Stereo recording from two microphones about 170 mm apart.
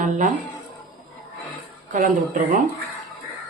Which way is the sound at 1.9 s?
50° right (ahead or behind).